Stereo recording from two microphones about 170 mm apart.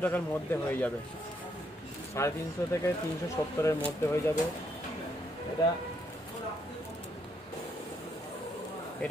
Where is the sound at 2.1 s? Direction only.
15° left (ahead or behind).